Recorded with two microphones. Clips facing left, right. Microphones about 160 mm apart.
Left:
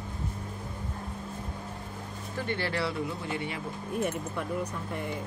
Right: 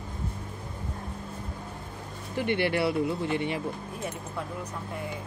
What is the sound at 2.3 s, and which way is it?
Speech, 20° right (ahead or behind).